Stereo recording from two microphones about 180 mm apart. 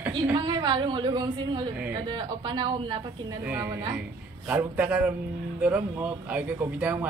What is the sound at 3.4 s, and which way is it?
Speech, 10° right (ahead or behind).